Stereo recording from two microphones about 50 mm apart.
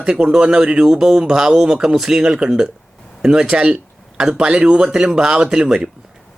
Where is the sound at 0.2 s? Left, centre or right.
Centre.